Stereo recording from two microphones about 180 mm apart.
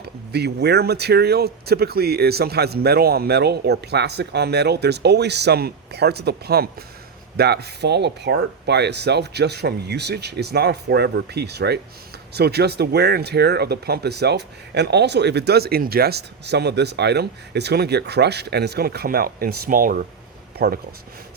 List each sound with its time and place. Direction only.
0.3 s speech: 65° right (ahead or behind); by 20.7 s 50° right (ahead or behind)